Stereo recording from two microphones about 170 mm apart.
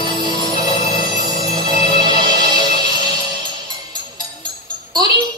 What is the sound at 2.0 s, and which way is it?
Music, 25° right (ahead or behind).